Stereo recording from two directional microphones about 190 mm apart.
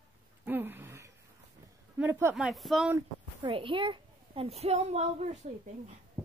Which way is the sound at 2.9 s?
25° right (ahead or behind).